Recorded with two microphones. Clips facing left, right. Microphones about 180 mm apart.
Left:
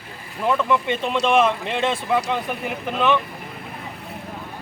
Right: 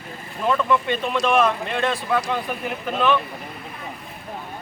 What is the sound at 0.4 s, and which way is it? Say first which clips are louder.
Speech: even; 15° left (ahead or behind).